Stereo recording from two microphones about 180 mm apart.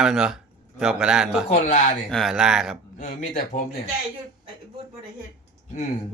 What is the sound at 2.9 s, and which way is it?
Speech, 45° left (ahead or behind).